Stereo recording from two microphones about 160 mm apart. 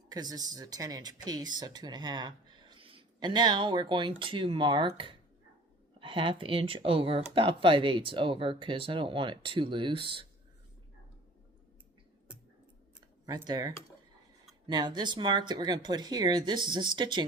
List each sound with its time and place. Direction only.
0.1 s speech: 25° right (ahead or behind)
13.2 s speech: 25° right (ahead or behind)